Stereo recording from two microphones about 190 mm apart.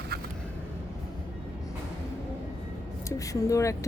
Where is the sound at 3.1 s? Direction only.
15° left (ahead or behind).